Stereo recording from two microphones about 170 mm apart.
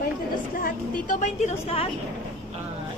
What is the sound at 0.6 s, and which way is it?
A woman's voice, 55° left (ahead or behind).